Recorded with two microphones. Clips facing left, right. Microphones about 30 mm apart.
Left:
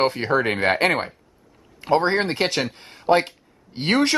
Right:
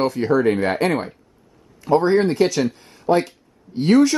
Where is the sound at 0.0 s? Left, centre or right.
Left.